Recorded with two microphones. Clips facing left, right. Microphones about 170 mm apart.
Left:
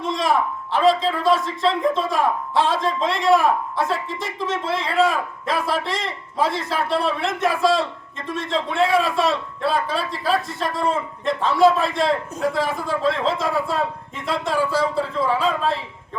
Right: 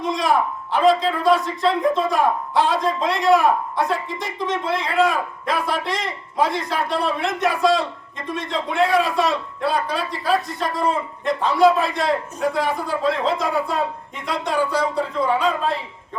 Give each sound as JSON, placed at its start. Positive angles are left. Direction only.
{"t": 0.0, "sound": "a man's voice", "side_deg": 0}